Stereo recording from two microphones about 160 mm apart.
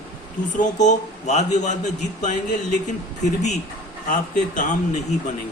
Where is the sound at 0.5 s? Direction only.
50° left (ahead or behind).